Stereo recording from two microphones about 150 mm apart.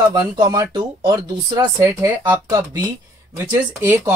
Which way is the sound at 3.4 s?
15° right (ahead or behind).